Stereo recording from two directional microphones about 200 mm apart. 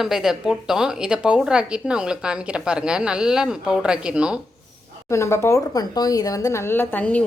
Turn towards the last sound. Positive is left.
turn(degrees=5)  # may be behind; listen again after turning